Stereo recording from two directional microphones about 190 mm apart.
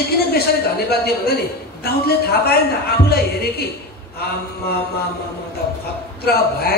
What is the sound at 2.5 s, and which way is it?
Speech, 55° left (ahead or behind).